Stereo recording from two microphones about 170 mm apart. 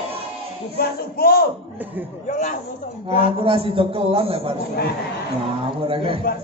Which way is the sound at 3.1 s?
30° right (ahead or behind).